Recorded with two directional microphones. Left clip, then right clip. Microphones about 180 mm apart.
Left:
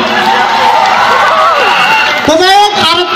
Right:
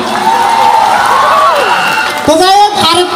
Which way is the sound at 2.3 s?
80° right.